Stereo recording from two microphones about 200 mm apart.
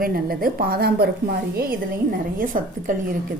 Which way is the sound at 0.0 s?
45° right (ahead or behind).